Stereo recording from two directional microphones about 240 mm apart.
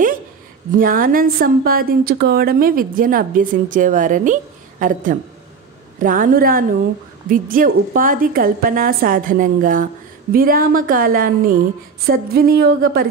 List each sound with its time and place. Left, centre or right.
0.7 s a woman's voice: right